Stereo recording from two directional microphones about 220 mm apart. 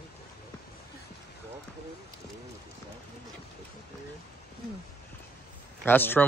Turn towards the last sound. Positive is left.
turn(degrees=10)  # may be behind; listen again after turning